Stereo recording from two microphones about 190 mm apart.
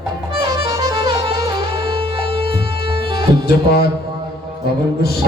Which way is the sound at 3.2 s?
55° left (ahead or behind).